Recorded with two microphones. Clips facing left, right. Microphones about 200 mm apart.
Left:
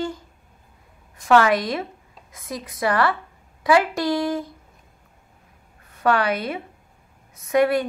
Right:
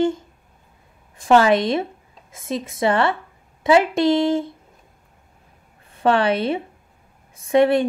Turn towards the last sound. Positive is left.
turn(degrees=-25)  # may be behind; listen again after turning